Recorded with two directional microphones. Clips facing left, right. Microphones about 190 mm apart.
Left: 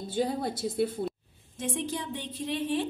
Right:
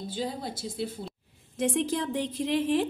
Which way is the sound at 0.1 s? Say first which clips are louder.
Left 6 dB; 60° left (ahead or behind).